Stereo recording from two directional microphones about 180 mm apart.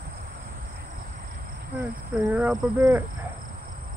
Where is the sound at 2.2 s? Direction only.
10° right (ahead or behind).